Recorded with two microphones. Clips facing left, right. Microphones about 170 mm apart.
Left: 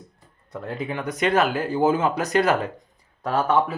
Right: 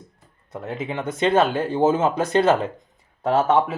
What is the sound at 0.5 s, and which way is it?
Speech, 20° right (ahead or behind).